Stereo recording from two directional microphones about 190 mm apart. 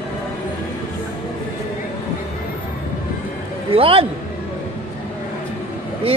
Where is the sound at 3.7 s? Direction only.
30° right (ahead or behind).